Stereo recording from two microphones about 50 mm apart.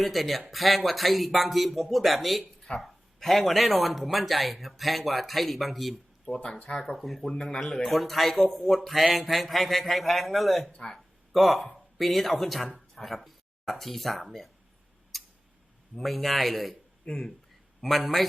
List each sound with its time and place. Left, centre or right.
0.0 s speech: centre
6.4 s speech: centre
6.9 s speech: centre
10.7 s speech: centre
11.3 s speech: centre
15.1 s a sound: centre
16.0 s speech: centre